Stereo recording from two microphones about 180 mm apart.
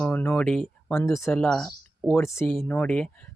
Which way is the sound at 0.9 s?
15° left (ahead or behind).